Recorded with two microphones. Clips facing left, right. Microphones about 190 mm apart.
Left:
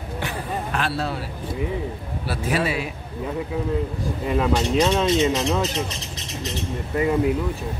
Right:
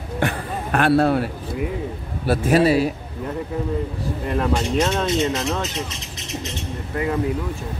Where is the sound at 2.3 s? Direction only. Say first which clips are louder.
Right 8 dB; 45° right (ahead or behind).